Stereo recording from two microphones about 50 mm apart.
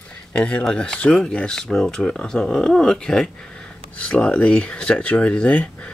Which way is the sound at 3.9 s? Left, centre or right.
Left.